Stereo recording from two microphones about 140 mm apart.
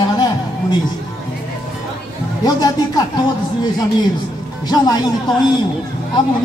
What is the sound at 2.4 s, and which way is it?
Speech, 25° left (ahead or behind).